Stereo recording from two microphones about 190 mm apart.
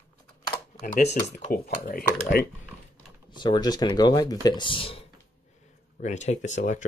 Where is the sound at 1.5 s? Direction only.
50° left (ahead or behind).